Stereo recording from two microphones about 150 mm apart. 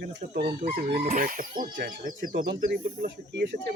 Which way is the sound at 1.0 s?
65° right (ahead or behind).